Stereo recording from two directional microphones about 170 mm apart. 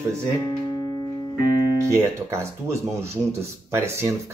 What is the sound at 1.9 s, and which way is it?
Speech, 15° right (ahead or behind).